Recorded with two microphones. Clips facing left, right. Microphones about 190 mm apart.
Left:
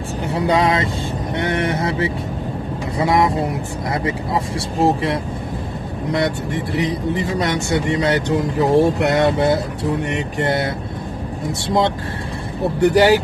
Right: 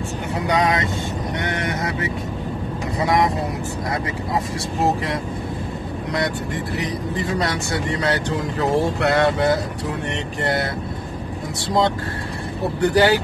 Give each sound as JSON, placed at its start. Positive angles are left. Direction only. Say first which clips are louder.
{"t": 0.3, "sound": "vehicle", "louder": "left 3 dB", "side_deg": 25}
{"t": 3.0, "sound": "speech", "louder": "left 3 dB", "side_deg": 25}
{"t": 12.8, "sound": "speech", "louder": "left 3 dB", "side_deg": 20}